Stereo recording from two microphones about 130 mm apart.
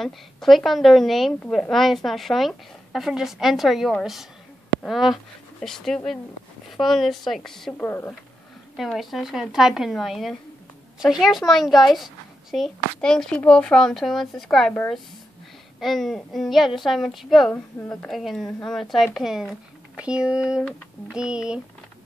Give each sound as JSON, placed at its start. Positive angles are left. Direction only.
{"t": 0.0, "sound": "a woman's voice", "side_deg": 0}
{"t": 7.8, "sound": "a woman's voice", "side_deg": 15}
{"t": 8.7, "sound": "a woman's voice", "side_deg": 0}
{"t": 15.8, "sound": "a woman's voice", "side_deg": 0}
{"t": 17.5, "sound": "a woman's voice", "side_deg": 10}
{"t": 18.1, "sound": "a woman's voice", "side_deg": 0}